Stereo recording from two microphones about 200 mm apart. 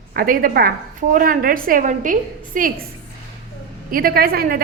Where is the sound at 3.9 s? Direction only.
45° right (ahead or behind).